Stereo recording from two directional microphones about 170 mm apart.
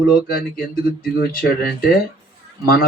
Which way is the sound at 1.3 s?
60° left (ahead or behind).